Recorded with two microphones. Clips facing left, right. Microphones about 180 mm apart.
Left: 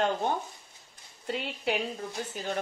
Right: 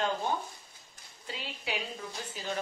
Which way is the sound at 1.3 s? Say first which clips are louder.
Left 8 dB; 55° left (ahead or behind).